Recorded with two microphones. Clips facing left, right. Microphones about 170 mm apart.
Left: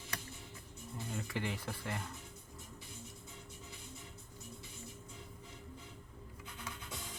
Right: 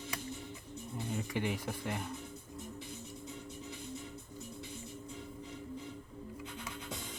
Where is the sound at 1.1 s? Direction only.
15° right (ahead or behind).